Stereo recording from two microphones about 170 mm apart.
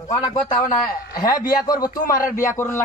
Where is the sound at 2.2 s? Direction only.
50° left (ahead or behind).